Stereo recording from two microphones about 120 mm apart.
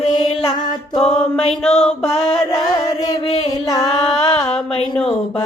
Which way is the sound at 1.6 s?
60° left (ahead or behind).